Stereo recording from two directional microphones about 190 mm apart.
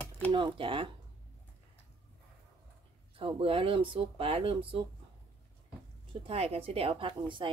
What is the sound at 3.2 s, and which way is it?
A woman's voice, 30° right (ahead or behind).